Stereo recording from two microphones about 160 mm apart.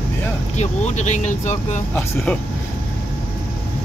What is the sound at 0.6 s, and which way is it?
Speech, 45° left (ahead or behind).